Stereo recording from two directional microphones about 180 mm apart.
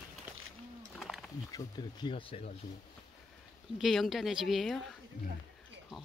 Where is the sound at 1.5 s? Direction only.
20° left (ahead or behind).